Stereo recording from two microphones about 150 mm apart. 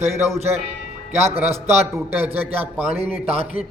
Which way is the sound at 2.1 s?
10° right (ahead or behind).